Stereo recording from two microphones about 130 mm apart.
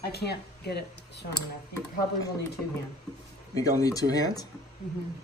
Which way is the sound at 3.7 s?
30° left (ahead or behind).